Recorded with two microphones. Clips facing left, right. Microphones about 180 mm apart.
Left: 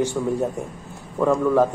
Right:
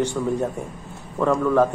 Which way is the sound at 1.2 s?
15° left (ahead or behind).